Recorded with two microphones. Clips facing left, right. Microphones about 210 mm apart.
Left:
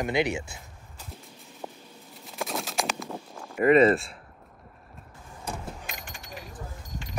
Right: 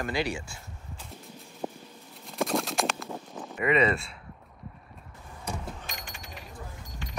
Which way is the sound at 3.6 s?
40° left (ahead or behind).